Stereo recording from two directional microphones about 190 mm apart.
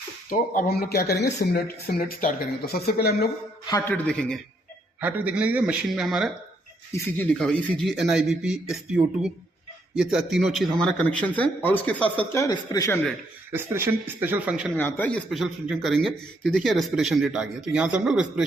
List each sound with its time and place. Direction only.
0.3 s speech: 50° left (ahead or behind)
3.7 s speech: 15° left (ahead or behind)
4.9 s a man's voice: 10° right (ahead or behind); by 13.0 s 20° left (ahead or behind)
13.5 s a man's voice: 10° right (ahead or behind)
14.8 s speech: 10° left (ahead or behind)